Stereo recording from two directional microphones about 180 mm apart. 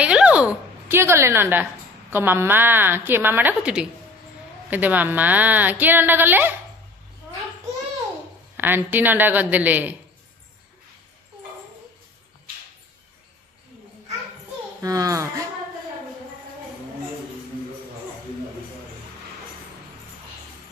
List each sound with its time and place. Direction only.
0.0 s a woman's voice: 5° right (ahead or behind)
8.5 s a woman's voice: 10° right (ahead or behind)
14.8 s a child's voice: 20° right (ahead or behind)